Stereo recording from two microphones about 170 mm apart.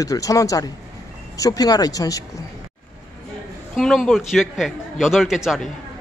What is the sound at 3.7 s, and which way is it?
Speech, centre (ahead or behind).